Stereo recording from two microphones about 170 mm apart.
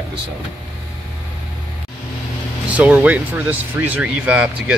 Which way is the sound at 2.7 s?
10° right (ahead or behind).